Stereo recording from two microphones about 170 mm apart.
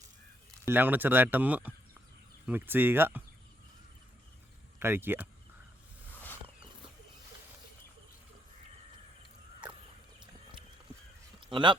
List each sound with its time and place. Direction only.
0.6 s speech: 10° right (ahead or behind)
4.8 s speech: 15° right (ahead or behind)
6.1 s a sound: 10° left (ahead or behind)
11.5 s speech: 30° right (ahead or behind)